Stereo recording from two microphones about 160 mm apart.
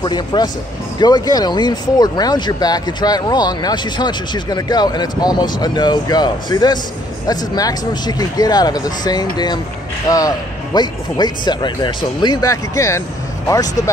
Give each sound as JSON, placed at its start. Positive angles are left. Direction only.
{"t": 0.0, "sound": "speech", "side_deg": 25}